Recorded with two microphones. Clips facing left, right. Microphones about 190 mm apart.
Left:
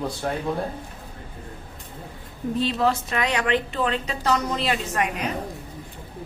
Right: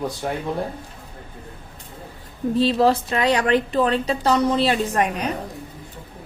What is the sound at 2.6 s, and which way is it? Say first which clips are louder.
Speech: right 5 dB; 35° right (ahead or behind).